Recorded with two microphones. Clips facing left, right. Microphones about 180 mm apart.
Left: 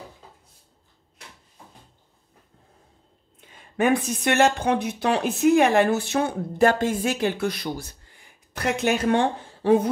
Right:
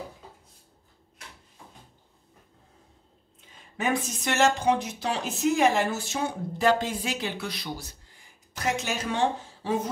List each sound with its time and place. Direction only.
3.3 s speech: 60° left (ahead or behind)
8.5 s speech: 60° left (ahead or behind)